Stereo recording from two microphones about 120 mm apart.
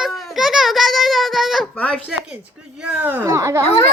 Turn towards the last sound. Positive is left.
turn(degrees=-25)  # may be behind; listen again after turning